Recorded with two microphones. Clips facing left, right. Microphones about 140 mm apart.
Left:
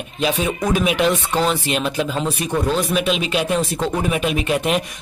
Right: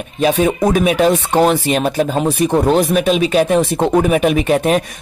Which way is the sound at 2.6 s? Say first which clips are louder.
Right 5 dB; 60° right (ahead or behind).